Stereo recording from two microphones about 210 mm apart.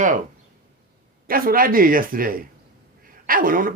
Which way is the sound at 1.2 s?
45° right (ahead or behind).